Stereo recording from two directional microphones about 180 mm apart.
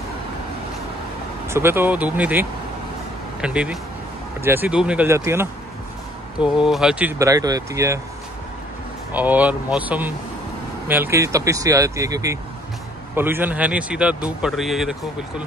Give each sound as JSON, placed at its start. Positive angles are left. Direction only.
{"t": 1.5, "sound": "speech", "side_deg": -10}
{"t": 6.4, "sound": "speech", "side_deg": -5}
{"t": 9.1, "sound": "speech", "side_deg": -10}